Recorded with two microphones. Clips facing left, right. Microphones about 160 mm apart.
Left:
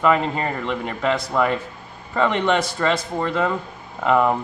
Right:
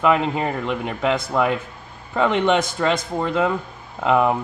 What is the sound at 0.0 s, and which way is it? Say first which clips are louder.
Speech: right 1 dB; 5° right (ahead or behind).